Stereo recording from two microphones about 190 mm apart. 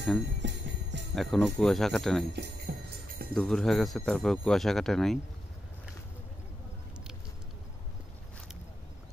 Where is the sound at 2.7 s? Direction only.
55° right (ahead or behind).